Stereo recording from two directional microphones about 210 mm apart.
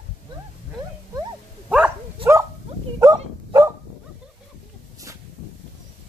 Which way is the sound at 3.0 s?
15° right (ahead or behind).